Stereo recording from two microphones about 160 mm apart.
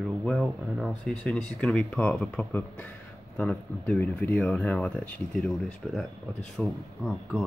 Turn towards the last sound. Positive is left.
turn(degrees=0)  # may be behind; listen again after turning